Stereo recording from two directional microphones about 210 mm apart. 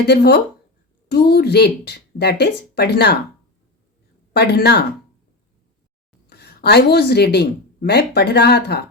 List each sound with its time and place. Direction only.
0.0 s speech: 50° left (ahead or behind)
4.4 s speech: 50° left (ahead or behind)
6.2 s a woman's voice: 50° left (ahead or behind)